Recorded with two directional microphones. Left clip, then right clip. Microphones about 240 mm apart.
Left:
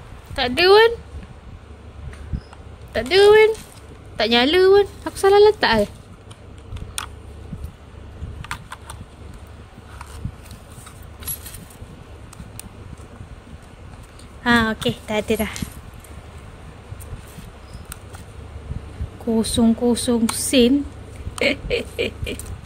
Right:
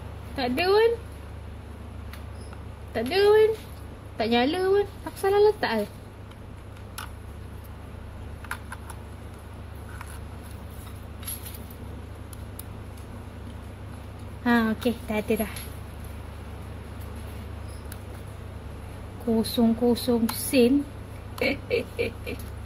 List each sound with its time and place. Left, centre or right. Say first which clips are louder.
0.4 s speech: left 8 dB; left
2.9 s speech: left 7 dB; left
14.4 s a woman's voice: left 6 dB; left
19.3 s a woman's voice: left 5 dB; left